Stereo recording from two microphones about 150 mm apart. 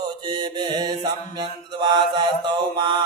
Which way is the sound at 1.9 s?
30° right (ahead or behind).